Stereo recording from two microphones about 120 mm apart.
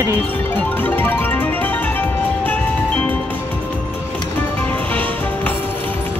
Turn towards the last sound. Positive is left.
turn(degrees=15)  # may be behind; listen again after turning